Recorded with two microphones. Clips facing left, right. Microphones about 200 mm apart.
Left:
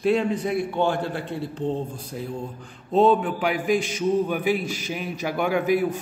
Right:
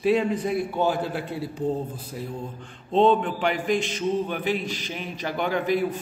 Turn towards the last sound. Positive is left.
turn(degrees=10)  # may be behind; listen again after turning